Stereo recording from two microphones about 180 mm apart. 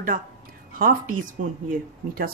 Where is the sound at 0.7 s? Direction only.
50° right (ahead or behind).